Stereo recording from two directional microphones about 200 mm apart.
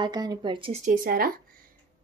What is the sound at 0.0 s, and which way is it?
Speech, 20° right (ahead or behind).